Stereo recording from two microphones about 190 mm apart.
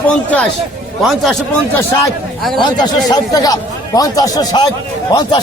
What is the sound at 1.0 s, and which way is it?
Speech, centre (ahead or behind).